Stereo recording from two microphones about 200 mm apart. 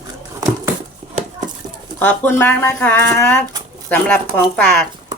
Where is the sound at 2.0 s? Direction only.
10° left (ahead or behind).